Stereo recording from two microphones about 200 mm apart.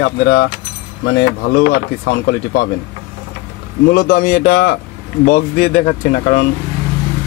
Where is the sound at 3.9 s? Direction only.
45° left (ahead or behind).